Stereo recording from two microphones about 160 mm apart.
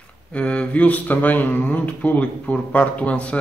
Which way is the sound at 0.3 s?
5° left (ahead or behind).